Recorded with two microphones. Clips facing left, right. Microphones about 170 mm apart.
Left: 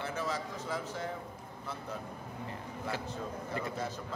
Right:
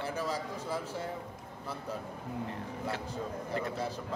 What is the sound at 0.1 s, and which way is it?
Speech, 35° right (ahead or behind).